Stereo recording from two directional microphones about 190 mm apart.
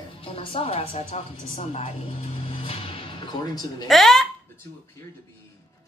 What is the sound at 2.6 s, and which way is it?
Music, 30° left (ahead or behind).